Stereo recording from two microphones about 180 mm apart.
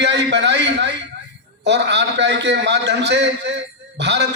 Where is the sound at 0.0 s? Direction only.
75° right (ahead or behind).